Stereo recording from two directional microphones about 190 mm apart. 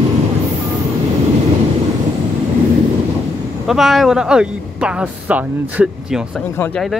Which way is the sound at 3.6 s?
Centre (ahead or behind).